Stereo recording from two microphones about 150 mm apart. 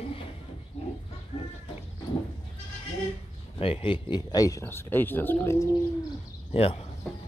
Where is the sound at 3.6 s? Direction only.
40° left (ahead or behind).